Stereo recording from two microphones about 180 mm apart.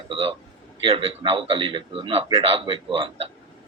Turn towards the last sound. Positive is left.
turn(degrees=-35)  # may be behind; listen again after turning